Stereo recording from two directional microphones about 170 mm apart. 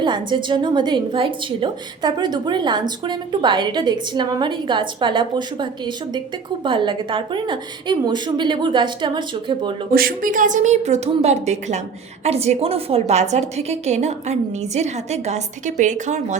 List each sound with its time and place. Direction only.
0.0 s a woman's voice: 25° right (ahead or behind)
9.9 s a woman's voice: 60° right (ahead or behind)